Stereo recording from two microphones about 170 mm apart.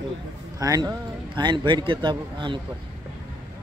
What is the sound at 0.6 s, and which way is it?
Speech, 20° right (ahead or behind).